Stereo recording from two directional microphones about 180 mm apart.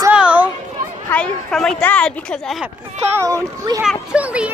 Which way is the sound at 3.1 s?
15° right (ahead or behind).